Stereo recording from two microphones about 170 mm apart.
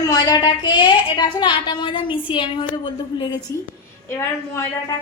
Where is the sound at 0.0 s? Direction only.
25° left (ahead or behind).